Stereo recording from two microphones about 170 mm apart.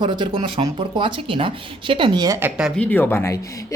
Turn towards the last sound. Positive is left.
turn(degrees=15)  # may be behind; listen again after turning